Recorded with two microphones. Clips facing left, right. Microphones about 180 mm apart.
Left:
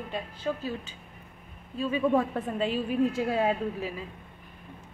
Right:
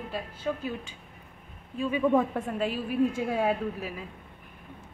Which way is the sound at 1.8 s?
15° right (ahead or behind).